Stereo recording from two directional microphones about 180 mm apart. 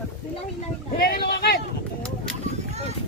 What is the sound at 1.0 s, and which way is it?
Speech, 55° left (ahead or behind).